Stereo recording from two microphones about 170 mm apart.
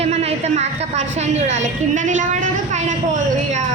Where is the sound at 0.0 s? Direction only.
35° right (ahead or behind).